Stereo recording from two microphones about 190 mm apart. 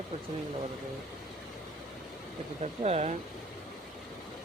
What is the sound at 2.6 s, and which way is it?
Speech, 35° right (ahead or behind).